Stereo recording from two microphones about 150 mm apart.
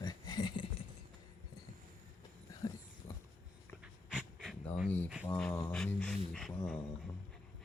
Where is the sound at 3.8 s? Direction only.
5° right (ahead or behind).